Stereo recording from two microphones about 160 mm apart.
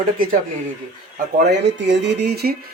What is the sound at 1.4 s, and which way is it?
Speech, 90° right.